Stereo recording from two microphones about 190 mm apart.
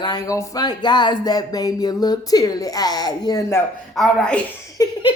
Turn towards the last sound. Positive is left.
turn(degrees=20)  # may be behind; listen again after turning